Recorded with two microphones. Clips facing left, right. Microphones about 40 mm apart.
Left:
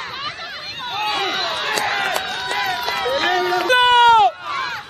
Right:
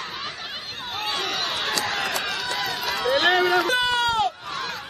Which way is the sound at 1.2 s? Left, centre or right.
Left.